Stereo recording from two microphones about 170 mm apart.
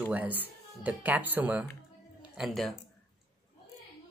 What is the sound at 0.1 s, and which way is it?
Speech, 10° right (ahead or behind).